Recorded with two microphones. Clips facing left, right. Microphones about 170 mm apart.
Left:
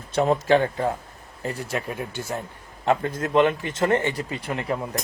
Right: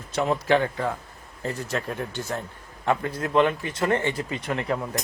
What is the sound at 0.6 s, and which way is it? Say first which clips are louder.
Speech: left 2 dB; 30° left (ahead or behind).